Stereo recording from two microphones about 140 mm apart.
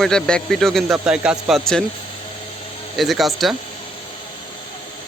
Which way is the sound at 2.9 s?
Centre (ahead or behind).